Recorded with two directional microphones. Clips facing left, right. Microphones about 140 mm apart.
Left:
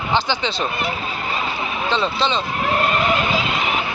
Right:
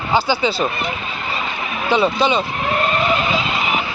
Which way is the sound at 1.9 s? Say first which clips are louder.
Right 5 dB; 10° right (ahead or behind).